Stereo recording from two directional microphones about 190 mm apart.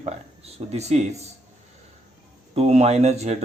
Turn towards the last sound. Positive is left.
turn(degrees=-35)  # may be behind; listen again after turning